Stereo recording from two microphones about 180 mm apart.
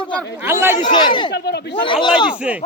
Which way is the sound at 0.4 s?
15° right (ahead or behind).